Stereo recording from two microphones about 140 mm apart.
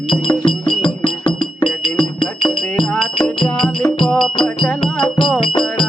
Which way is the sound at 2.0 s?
35° left (ahead or behind).